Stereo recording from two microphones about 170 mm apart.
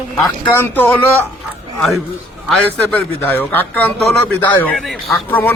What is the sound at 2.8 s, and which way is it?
A man's voice, 10° left (ahead or behind).